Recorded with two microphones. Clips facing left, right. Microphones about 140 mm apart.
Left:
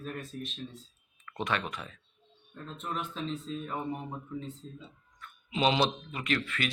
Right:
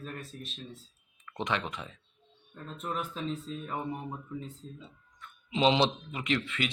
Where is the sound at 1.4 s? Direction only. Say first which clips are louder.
Even; 20° right (ahead or behind).